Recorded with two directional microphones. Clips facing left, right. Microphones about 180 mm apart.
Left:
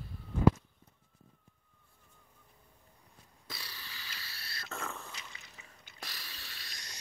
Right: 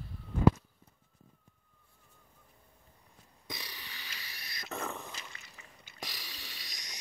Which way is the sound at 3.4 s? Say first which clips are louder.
Right 3 dB; 15° right (ahead or behind).